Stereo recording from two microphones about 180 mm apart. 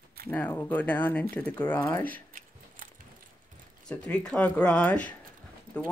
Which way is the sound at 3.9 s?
5° left (ahead or behind).